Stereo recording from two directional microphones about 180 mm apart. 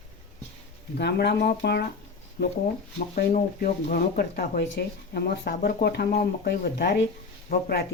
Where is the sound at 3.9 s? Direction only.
60° left (ahead or behind).